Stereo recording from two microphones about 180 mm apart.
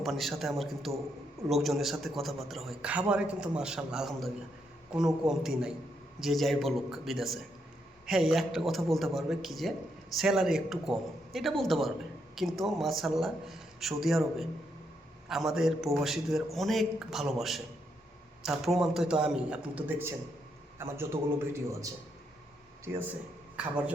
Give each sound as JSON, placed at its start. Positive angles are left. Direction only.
{"t": 0.0, "sound": "a man's voice", "side_deg": 0}
{"t": 23.6, "sound": "a man's voice", "side_deg": -5}